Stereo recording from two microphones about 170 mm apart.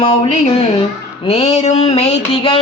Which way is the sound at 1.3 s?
40° left (ahead or behind).